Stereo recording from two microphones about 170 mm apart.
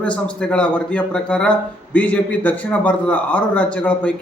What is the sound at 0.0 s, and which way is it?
Speech, 5° left (ahead or behind).